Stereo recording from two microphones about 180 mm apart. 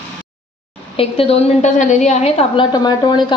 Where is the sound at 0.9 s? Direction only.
35° left (ahead or behind).